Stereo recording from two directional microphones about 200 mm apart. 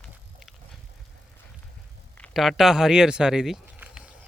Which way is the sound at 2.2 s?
5° left (ahead or behind).